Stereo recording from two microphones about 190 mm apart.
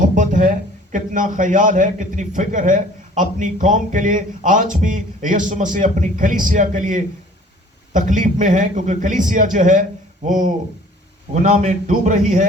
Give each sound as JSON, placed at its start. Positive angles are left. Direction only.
{"t": 0.2, "sound": "a man's voice", "side_deg": -45}